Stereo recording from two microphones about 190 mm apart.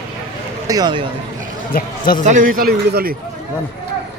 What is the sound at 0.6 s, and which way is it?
Speech, 20° right (ahead or behind).